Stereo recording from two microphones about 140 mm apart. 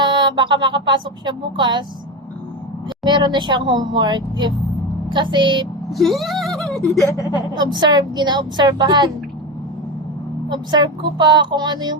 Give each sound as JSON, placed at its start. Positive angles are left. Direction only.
{"t": 0.0, "sound": "speech", "side_deg": -35}
{"t": 3.0, "sound": "speech", "side_deg": -30}
{"t": 5.9, "sound": "speech", "side_deg": 0}
{"t": 7.5, "sound": "speech", "side_deg": -30}
{"t": 10.5, "sound": "speech", "side_deg": -30}